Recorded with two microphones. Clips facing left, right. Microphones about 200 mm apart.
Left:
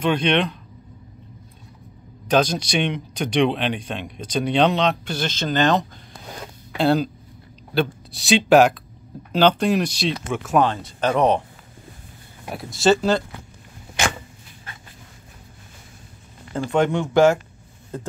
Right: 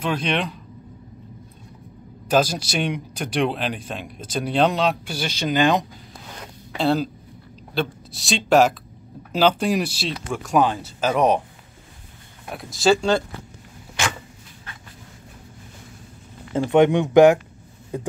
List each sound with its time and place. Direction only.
0.0 s speech: 5° right (ahead or behind)
2.2 s speech: 5° right (ahead or behind)
6.8 s speech: centre (ahead or behind)
12.4 s speech: centre (ahead or behind)
16.7 s speech: 15° right (ahead or behind)